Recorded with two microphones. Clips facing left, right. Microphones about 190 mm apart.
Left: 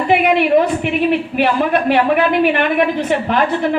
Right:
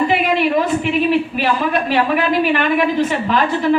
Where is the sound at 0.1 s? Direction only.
55° left (ahead or behind).